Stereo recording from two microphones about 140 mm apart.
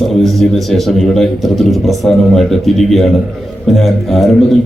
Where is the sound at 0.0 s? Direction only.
Centre (ahead or behind).